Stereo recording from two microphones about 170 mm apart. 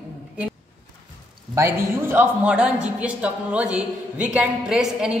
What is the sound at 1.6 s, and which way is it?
A man's voice, 15° right (ahead or behind).